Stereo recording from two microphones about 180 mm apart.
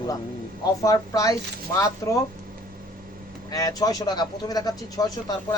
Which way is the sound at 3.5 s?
20° left (ahead or behind).